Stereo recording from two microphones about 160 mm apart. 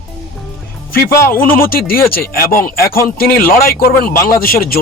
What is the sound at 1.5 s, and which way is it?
Speech, 65° left (ahead or behind).